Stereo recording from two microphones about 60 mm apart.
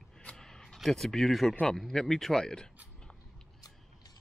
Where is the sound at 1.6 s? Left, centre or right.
Centre.